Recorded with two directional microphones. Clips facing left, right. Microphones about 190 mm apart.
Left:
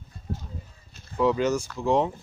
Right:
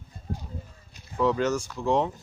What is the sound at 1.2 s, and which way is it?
Speech, 10° left (ahead or behind).